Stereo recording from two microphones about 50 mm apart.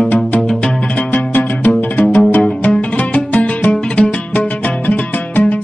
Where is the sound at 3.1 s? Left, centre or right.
Left.